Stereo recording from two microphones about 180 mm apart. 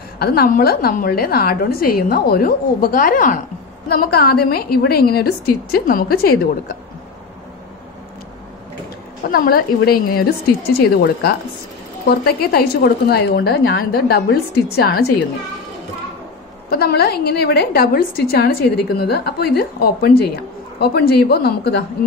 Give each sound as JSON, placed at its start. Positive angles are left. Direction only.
{"t": 0.2, "sound": "a woman's voice", "side_deg": 60}
{"t": 9.3, "sound": "a woman's voice", "side_deg": 55}
{"t": 16.6, "sound": "a woman's voice", "side_deg": 60}